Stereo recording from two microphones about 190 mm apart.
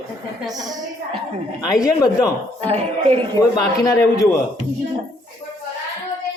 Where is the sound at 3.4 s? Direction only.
20° left (ahead or behind).